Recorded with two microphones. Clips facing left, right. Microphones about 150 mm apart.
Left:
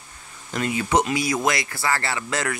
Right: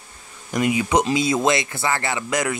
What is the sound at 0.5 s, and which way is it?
Speech, 15° right (ahead or behind).